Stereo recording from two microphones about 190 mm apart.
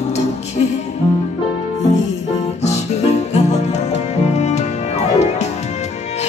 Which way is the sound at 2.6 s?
35° left (ahead or behind).